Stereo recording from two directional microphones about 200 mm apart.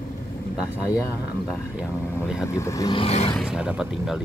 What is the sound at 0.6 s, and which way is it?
Speech, 15° left (ahead or behind).